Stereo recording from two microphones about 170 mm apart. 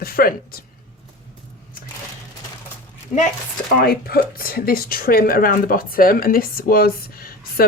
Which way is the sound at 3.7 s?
60° left (ahead or behind).